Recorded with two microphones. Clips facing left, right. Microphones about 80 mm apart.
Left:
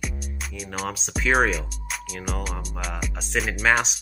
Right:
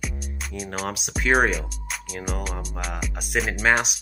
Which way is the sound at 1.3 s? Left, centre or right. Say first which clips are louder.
Right 1 dB; centre.